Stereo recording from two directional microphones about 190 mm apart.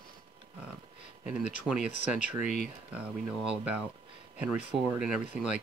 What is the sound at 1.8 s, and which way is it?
Speech, 40° left (ahead or behind).